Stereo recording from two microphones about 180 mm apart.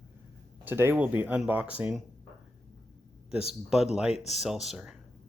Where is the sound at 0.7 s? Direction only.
10° right (ahead or behind).